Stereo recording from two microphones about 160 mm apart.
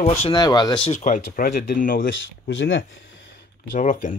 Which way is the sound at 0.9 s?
50° left (ahead or behind).